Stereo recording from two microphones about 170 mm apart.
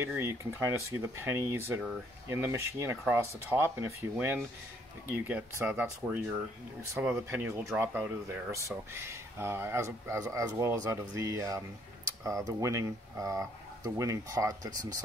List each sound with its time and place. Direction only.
0.0 s speech: 15° right (ahead or behind)